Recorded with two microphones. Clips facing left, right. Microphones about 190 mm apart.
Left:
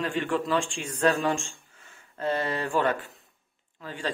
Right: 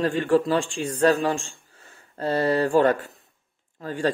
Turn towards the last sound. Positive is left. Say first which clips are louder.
# right 8 dB
turn(degrees=-45)  # may be behind; listen again after turning